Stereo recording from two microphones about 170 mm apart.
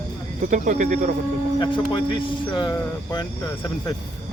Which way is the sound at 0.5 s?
50° right (ahead or behind).